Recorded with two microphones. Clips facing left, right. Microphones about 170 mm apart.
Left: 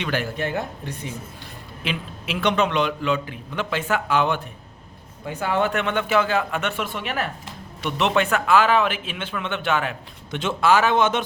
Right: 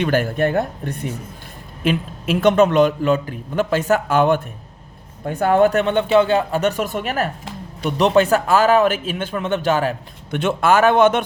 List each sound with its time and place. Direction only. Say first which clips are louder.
0.0 s a man's voice: right 8 dB; 45° right (ahead or behind)
10.3 s a man's voice: right 3 dB; 55° right (ahead or behind)